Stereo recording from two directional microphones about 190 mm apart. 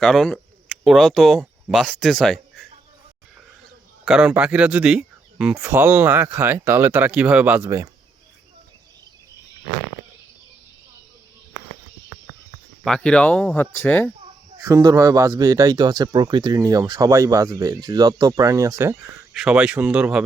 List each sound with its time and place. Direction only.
0.0 s speech: centre (ahead or behind)
4.0 s speech: 5° right (ahead or behind)
12.8 s speech: 5° left (ahead or behind)
14.6 s speech: 20° right (ahead or behind)
19.3 s speech: 5° right (ahead or behind)